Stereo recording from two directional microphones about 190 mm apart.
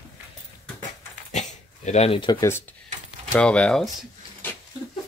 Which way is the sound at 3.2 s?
5° left (ahead or behind).